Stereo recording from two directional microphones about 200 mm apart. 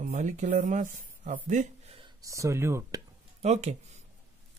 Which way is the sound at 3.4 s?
35° right (ahead or behind).